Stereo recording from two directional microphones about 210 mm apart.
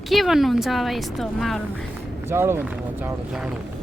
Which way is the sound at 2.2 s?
10° right (ahead or behind).